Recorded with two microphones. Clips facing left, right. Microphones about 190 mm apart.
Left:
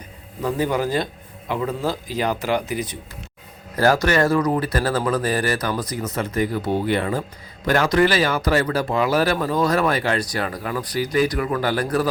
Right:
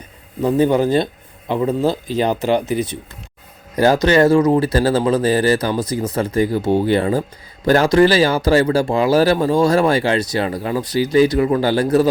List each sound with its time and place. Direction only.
0.4 s speech: 25° right (ahead or behind)